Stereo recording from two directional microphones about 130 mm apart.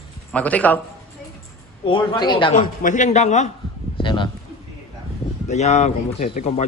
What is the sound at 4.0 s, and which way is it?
Speech, 40° left (ahead or behind).